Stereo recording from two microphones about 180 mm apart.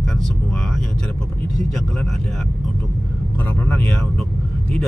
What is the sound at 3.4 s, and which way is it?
Speech, 10° left (ahead or behind).